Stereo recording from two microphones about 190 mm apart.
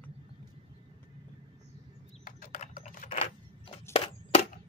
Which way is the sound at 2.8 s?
40° left (ahead or behind).